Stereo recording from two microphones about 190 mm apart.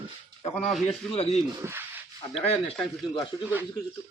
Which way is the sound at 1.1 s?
30° left (ahead or behind).